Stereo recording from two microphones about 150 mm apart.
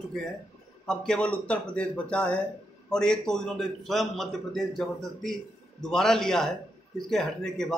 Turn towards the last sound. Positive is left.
turn(degrees=5)  # may be behind; listen again after turning